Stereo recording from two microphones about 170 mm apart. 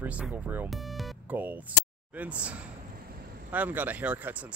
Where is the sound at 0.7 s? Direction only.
Centre (ahead or behind).